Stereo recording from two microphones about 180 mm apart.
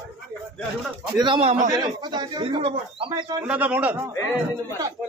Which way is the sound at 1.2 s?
30° right (ahead or behind).